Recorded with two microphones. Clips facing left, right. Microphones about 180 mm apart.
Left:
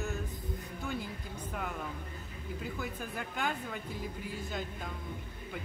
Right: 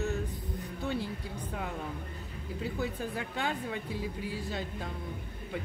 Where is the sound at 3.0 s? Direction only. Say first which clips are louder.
Right 3 dB; 30° right (ahead or behind).